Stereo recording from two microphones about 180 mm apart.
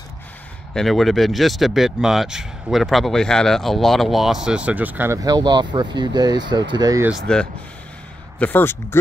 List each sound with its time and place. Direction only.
0.7 s speech: centre (ahead or behind); by 7.1 s 20° right (ahead or behind)
7.1 s speech: 5° left (ahead or behind)